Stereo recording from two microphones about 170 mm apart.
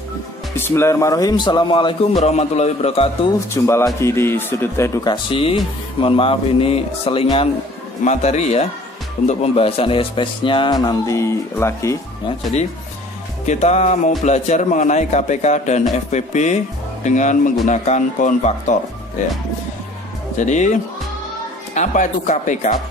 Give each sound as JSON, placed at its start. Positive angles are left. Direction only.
{"t": 0.6, "sound": "speech", "side_deg": 15}
{"t": 2.1, "sound": "a man's voice", "side_deg": 40}
{"t": 3.6, "sound": "speech", "side_deg": 15}
{"t": 8.0, "sound": "a man's voice", "side_deg": 40}
{"t": 13.5, "sound": "speech", "side_deg": 40}
{"t": 20.3, "sound": "speech", "side_deg": 45}